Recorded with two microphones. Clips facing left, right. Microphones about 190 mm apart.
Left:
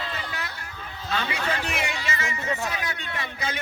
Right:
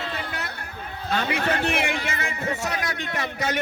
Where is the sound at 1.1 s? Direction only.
50° right (ahead or behind).